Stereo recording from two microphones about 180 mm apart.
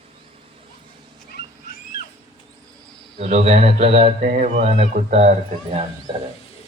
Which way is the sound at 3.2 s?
40° right (ahead or behind).